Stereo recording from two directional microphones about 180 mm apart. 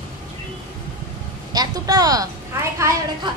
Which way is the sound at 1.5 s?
20° right (ahead or behind).